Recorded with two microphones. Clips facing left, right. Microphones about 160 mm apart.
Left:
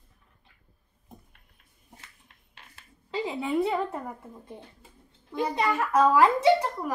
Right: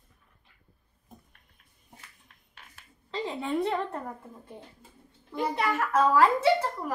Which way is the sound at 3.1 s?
10° left (ahead or behind).